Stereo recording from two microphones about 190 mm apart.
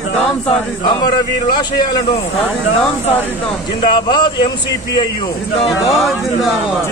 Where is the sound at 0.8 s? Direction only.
25° left (ahead or behind).